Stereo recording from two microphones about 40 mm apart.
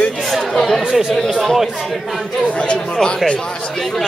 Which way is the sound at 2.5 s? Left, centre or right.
Left.